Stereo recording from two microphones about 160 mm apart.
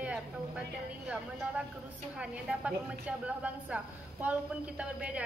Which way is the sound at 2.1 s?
5° right (ahead or behind).